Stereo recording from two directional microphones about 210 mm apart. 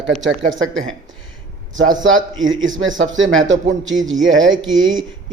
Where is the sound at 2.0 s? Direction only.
65° right (ahead or behind).